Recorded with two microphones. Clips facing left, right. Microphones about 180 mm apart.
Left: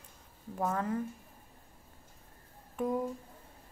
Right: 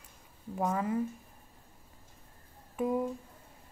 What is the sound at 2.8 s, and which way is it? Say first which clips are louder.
Speech: right 2 dB; 5° right (ahead or behind).